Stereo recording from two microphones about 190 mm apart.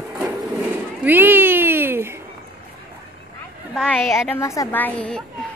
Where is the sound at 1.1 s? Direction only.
10° right (ahead or behind).